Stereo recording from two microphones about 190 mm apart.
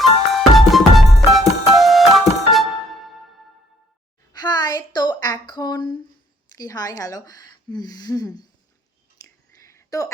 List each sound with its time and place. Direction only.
0.0 s music: centre (ahead or behind)
4.3 s a woman's voice: 20° left (ahead or behind)
9.6 s a sound: 15° left (ahead or behind)